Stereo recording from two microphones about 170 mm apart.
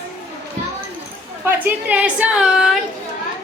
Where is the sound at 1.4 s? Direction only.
10° right (ahead or behind).